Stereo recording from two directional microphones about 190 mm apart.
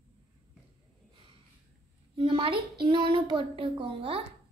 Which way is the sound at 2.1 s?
25° right (ahead or behind).